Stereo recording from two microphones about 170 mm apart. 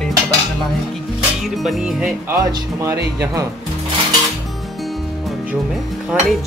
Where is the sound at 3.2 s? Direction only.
20° right (ahead or behind).